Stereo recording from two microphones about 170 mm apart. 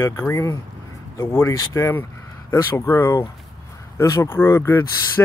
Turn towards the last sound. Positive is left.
turn(degrees=15)  # may be behind; listen again after turning